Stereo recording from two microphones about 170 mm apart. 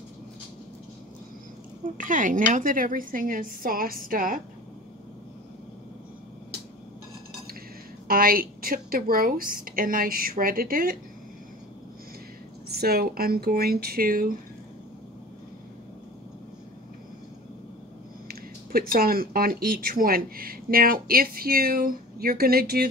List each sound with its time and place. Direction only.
2.0 s a woman's voice: 50° right (ahead or behind)
8.1 s speech: 60° right (ahead or behind)
12.7 s speech: 65° right (ahead or behind)
18.3 s speech: 60° right (ahead or behind)